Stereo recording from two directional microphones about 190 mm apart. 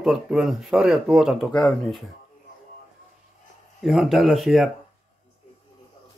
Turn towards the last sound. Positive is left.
turn(degrees=0)  # may be behind; listen again after turning